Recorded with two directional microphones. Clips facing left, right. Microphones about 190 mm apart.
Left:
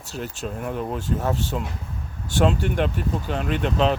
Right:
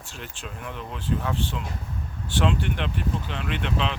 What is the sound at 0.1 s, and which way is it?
Speech, 40° left (ahead or behind).